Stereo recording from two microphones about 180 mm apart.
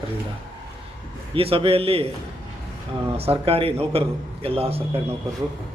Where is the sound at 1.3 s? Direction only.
30° right (ahead or behind).